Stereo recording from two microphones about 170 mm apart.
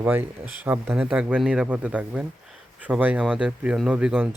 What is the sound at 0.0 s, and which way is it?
Speech, 10° right (ahead or behind).